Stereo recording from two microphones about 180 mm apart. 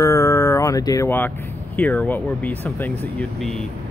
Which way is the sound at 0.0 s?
15° left (ahead or behind).